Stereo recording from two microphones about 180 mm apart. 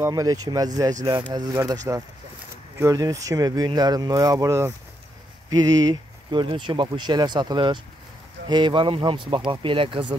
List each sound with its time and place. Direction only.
0.0 s speech: 20° right (ahead or behind)